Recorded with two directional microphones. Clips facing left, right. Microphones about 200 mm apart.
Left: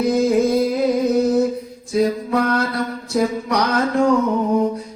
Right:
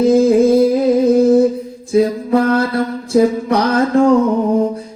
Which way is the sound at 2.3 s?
25° right (ahead or behind).